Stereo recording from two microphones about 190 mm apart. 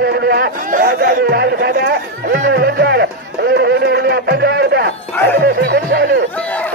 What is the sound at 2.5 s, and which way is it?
Music, 60° right (ahead or behind).